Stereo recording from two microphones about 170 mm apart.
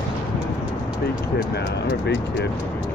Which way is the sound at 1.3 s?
80° left.